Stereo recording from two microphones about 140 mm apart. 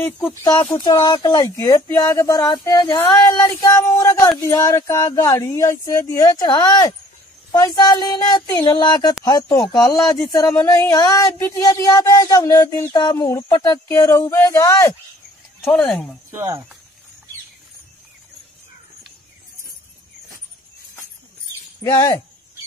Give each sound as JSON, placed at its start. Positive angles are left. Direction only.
{"t": 0.4, "sound": "speech", "side_deg": 15}
{"t": 0.7, "sound": "speech", "side_deg": 30}
{"t": 7.5, "sound": "a sound", "side_deg": 25}
{"t": 8.5, "sound": "speech", "side_deg": 30}
{"t": 15.6, "sound": "speech", "side_deg": 10}
{"t": 16.3, "sound": "speech", "side_deg": -20}
{"t": 21.8, "sound": "speech", "side_deg": 20}